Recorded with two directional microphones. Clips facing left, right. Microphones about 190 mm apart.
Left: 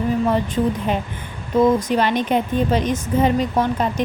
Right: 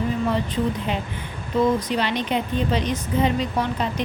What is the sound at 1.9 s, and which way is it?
Speech, 50° left (ahead or behind).